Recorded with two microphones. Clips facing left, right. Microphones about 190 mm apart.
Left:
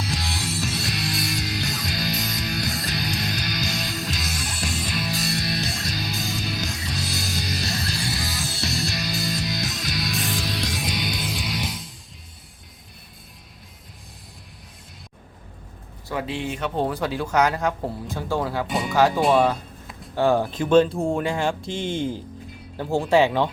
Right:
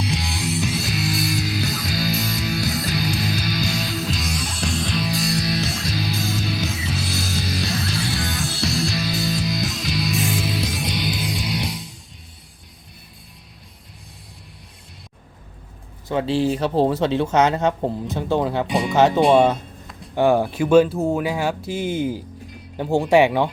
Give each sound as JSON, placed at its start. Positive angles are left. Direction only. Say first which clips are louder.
{"t": 0.0, "sound": "music", "louder": "right 4 dB", "side_deg": 0}
{"t": 16.0, "sound": "speech", "louder": "right 8 dB", "side_deg": -25}